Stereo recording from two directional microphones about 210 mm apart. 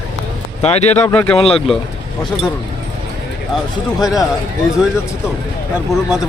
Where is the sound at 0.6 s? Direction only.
30° left (ahead or behind).